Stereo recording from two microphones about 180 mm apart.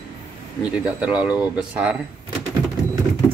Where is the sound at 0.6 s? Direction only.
5° right (ahead or behind).